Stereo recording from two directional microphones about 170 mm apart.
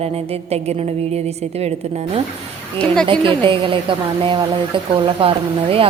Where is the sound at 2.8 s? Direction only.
5° left (ahead or behind).